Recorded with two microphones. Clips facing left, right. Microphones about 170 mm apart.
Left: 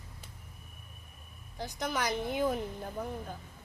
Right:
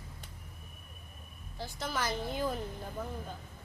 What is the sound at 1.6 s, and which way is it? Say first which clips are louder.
A woman's voice: left 2 dB; 20° left (ahead or behind).